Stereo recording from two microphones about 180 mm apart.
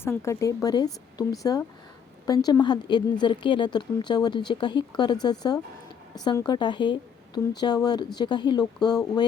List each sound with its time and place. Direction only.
0.0 s a woman's voice: 15° left (ahead or behind)